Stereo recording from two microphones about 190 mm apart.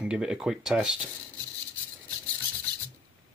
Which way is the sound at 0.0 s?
5° right (ahead or behind).